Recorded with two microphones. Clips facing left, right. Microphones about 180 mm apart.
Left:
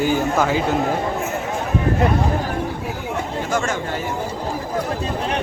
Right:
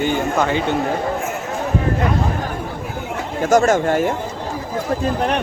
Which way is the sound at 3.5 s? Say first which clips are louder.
Right 10 dB; 40° right (ahead or behind).